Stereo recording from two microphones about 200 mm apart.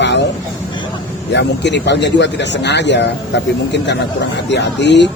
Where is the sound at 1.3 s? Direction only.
60° left (ahead or behind).